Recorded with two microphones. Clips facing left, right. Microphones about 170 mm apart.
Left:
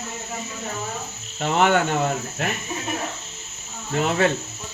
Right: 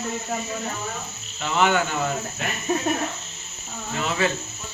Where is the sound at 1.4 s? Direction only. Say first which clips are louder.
Left 2 dB; 50° left (ahead or behind).